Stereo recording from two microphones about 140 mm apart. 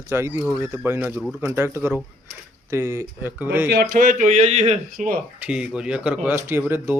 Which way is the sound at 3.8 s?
75° right (ahead or behind).